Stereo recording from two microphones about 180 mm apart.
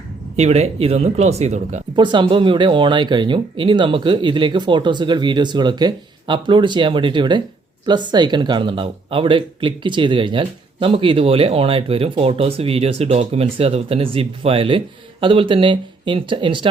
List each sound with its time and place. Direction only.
0.3 s speech: 35° right (ahead or behind)
2.0 s speech: 25° right (ahead or behind)